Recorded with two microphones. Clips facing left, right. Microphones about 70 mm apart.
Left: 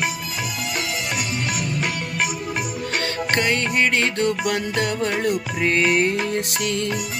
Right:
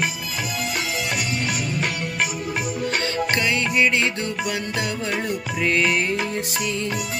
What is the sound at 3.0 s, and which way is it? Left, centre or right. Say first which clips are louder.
Music: left 3 dB; left.